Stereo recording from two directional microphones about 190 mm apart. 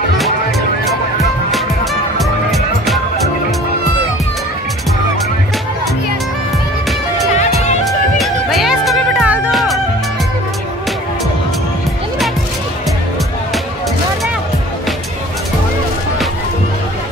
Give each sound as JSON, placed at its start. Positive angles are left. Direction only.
{"t": 2.1, "sound": "music", "side_deg": 0}
{"t": 7.8, "sound": "music", "side_deg": 0}